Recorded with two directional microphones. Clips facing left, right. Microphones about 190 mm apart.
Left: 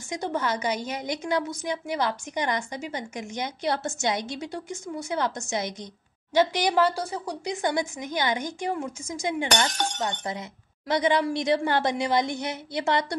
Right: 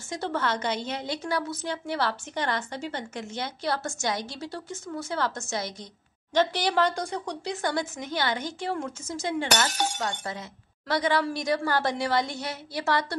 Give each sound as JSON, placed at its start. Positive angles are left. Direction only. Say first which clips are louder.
{"t": 0.1, "sound": "a woman's voice", "louder": "left 1 dB", "side_deg": 15}
{"t": 9.7, "sound": "speech", "louder": "even", "side_deg": -10}
{"t": 10.9, "sound": "a woman's voice", "louder": "left 2 dB", "side_deg": 20}